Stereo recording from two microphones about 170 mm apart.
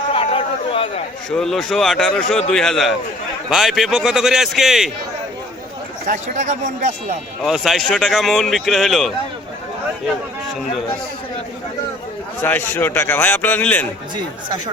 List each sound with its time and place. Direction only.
0.1 s chatter: 35° left (ahead or behind)
1.4 s speech: centre (ahead or behind)
6.1 s a man's voice: 45° right (ahead or behind)
7.4 s speech: centre (ahead or behind)
12.4 s a man's voice: 10° left (ahead or behind)